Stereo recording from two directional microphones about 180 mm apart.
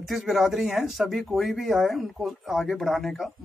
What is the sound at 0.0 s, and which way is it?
Speech, centre (ahead or behind).